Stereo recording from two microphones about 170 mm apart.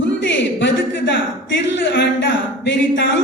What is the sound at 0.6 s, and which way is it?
Speech, 90° left.